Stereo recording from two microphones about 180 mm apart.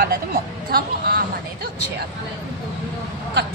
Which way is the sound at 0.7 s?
60° right (ahead or behind).